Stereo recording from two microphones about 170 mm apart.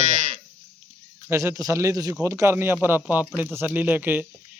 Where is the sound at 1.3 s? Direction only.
15° right (ahead or behind).